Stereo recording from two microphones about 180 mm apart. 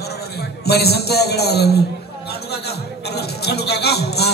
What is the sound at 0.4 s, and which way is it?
A man's voice, 65° left (ahead or behind).